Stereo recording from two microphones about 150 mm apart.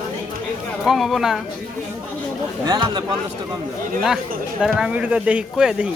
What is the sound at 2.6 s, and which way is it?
Speech, 30° right (ahead or behind).